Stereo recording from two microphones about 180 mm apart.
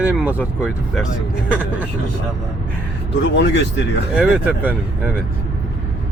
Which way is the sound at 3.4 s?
75° left (ahead or behind).